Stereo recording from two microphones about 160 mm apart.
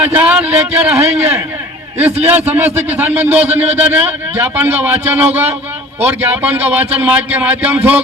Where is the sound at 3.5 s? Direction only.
40° right (ahead or behind).